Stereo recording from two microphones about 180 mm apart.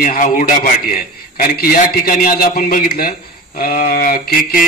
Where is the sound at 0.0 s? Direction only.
50° left (ahead or behind).